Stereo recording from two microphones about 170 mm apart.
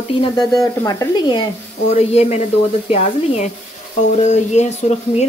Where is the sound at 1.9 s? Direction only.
35° left (ahead or behind).